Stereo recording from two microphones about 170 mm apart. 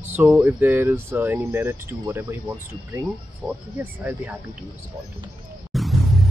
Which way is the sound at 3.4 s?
25° right (ahead or behind).